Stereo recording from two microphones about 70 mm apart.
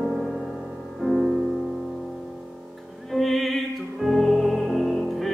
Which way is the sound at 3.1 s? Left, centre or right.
Centre.